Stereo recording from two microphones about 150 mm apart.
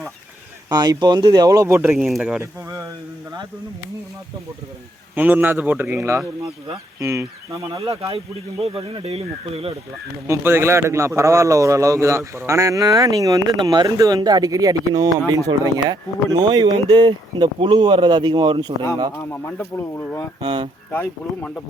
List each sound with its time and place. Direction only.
0.7 s speech: 25° right (ahead or behind)
2.0 s speech: 5° right (ahead or behind)
2.4 s a sound: 20° right (ahead or behind)
5.1 s a man's voice: 10° right (ahead or behind)
8.6 s speech: 35° right (ahead or behind)
10.2 s speech: 15° right (ahead or behind)
19.1 s speech: 15° left (ahead or behind)
20.4 s speech: 30° right (ahead or behind)
20.9 s speech: 10° left (ahead or behind)